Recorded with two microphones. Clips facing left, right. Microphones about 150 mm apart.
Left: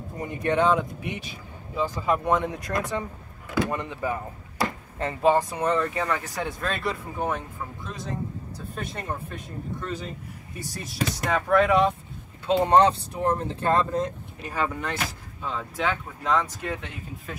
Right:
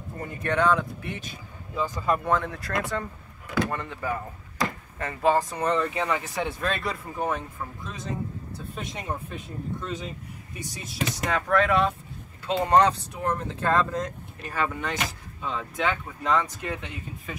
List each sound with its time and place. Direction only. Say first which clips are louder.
0.2 s speech: left 2 dB; 20° left (ahead or behind)
1.8 s speech: left 1 dB; 5° left (ahead or behind)
2.2 s speech: left 2 dB; 20° left (ahead or behind)
3.4 s speech: left 1 dB; centre (ahead or behind)
3.7 s speech: left 2 dB; 15° left (ahead or behind)
4.9 s speech: left 2 dB; 25° left (ahead or behind)
5.5 s speech: left 1 dB; 5° left (ahead or behind)
11.2 s speech: left 2 dB; 5° left (ahead or behind)
12.5 s speech: left 2 dB; 25° left (ahead or behind)
14.5 s speech: even; 5° left (ahead or behind)